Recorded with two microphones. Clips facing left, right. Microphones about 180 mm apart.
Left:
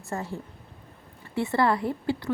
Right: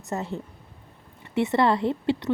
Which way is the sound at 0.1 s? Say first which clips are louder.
Right 3 dB; 20° right (ahead or behind).